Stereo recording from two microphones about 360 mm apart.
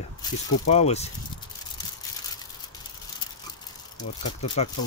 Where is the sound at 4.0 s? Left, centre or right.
Centre.